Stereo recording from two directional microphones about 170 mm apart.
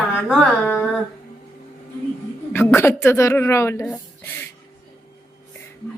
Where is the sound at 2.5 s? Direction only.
10° left (ahead or behind).